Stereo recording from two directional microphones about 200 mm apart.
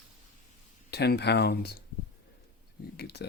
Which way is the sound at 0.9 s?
55° left (ahead or behind).